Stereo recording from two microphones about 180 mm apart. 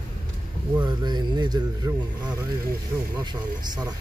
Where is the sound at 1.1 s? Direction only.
25° right (ahead or behind).